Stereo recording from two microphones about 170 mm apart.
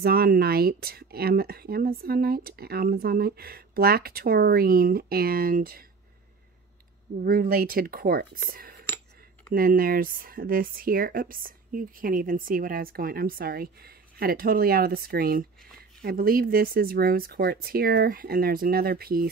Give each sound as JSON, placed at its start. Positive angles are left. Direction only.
{"t": 0.0, "sound": "speech", "side_deg": -60}
{"t": 7.2, "sound": "speech", "side_deg": -60}
{"t": 8.8, "sound": "a sound", "side_deg": 15}
{"t": 9.5, "sound": "speech", "side_deg": -60}